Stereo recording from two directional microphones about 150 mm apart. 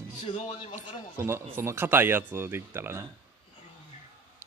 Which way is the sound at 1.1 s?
15° right (ahead or behind).